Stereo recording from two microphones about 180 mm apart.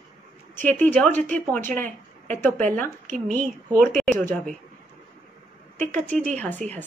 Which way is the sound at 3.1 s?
45° right (ahead or behind).